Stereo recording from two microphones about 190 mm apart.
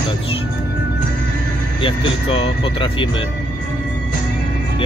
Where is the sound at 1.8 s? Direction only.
30° left (ahead or behind).